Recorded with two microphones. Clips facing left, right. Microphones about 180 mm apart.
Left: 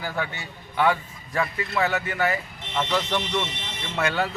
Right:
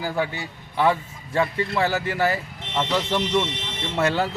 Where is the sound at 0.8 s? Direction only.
30° right (ahead or behind).